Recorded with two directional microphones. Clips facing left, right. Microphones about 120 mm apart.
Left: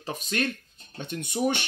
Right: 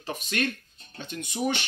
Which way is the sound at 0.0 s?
35° left (ahead or behind).